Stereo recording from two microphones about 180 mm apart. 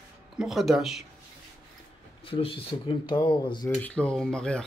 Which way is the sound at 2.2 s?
30° left (ahead or behind).